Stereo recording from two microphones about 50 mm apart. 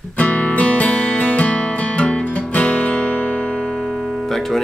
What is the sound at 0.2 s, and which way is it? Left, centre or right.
Music, left.